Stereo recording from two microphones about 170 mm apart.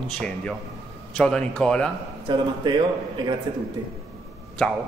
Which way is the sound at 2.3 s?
30° right (ahead or behind).